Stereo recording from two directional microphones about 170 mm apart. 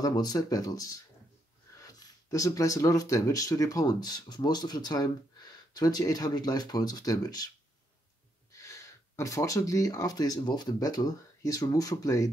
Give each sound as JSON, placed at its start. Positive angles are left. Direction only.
{"t": 0.0, "sound": "speech", "side_deg": 20}
{"t": 8.5, "sound": "speech", "side_deg": 15}